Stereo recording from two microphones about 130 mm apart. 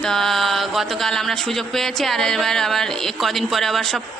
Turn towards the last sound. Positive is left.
turn(degrees=0)  # may be behind; listen again after turning